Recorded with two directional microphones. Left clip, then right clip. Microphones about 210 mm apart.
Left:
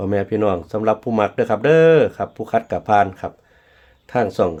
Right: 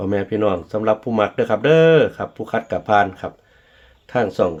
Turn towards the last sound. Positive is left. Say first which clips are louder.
# even
turn(degrees=20)  # may be behind; listen again after turning